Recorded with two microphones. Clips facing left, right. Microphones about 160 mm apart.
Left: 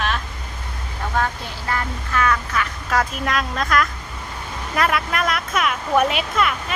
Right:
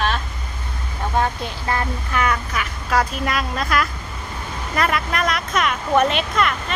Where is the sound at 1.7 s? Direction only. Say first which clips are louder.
Right 1 dB; 15° right (ahead or behind).